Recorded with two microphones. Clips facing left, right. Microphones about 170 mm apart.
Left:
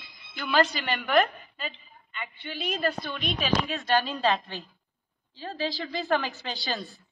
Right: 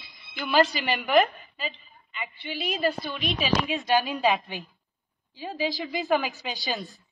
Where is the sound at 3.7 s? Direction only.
10° right (ahead or behind).